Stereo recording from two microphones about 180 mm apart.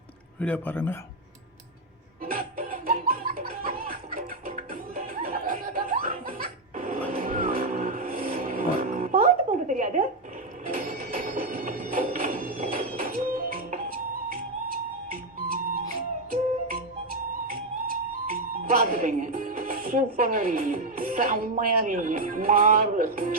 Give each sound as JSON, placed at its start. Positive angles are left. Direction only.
{"t": 0.3, "sound": "speech", "side_deg": 10}
{"t": 2.2, "sound": "music", "side_deg": -50}
{"t": 10.7, "sound": "a sound", "side_deg": -50}
{"t": 12.7, "sound": "music", "side_deg": -50}